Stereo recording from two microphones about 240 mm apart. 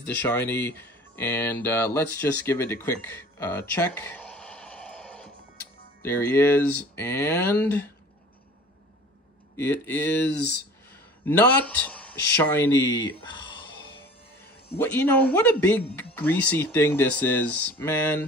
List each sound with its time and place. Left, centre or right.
0.0 s speech: centre
9.6 s a man's voice: centre
14.8 s a man's voice: centre